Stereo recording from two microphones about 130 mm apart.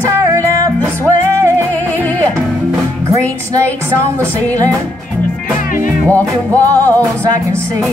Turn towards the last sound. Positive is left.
turn(degrees=15)  # may be behind; listen again after turning